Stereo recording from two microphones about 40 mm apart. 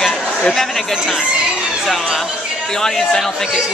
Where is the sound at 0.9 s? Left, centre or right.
Centre.